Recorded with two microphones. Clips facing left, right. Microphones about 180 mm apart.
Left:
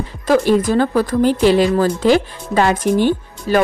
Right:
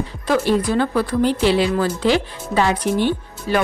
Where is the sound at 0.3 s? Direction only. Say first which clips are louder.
Left 4 dB; 45° left (ahead or behind).